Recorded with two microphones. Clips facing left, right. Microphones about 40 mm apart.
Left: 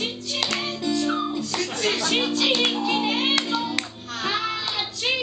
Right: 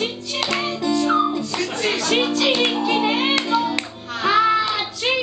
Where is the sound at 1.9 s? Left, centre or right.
Centre.